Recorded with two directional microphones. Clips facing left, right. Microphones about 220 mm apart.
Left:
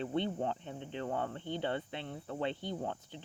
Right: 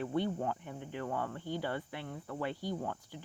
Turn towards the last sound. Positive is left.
turn(degrees=20)  # may be behind; listen again after turning